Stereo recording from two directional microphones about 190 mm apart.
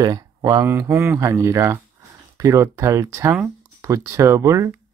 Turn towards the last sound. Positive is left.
turn(degrees=-15)  # may be behind; listen again after turning